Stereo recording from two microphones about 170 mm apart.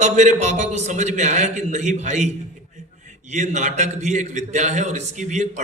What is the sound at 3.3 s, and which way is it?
A man's voice, 45° right (ahead or behind).